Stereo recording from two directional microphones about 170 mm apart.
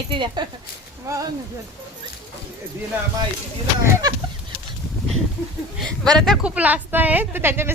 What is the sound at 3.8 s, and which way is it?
Speech, 20° right (ahead or behind).